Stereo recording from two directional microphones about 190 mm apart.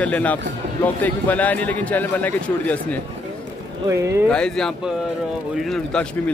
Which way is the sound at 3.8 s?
15° right (ahead or behind).